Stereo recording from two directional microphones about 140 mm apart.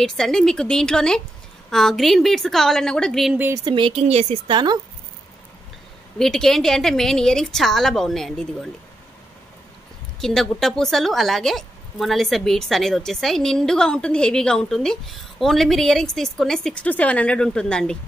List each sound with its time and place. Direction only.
0.0 s a woman's voice: 5° left (ahead or behind)
3.3 s speech: 15° right (ahead or behind)
3.6 s speech: 35° right (ahead or behind)
4.0 s a woman's voice: 50° right (ahead or behind)
4.5 s speech: 35° right (ahead or behind)
6.1 s a woman's voice: 5° left (ahead or behind)
10.2 s a woman's voice: 5° left (ahead or behind)